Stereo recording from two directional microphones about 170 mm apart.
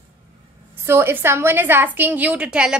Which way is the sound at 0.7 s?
15° right (ahead or behind).